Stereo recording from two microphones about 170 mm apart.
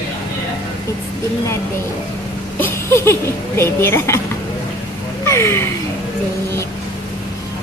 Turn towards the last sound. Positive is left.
turn(degrees=15)  # may be behind; listen again after turning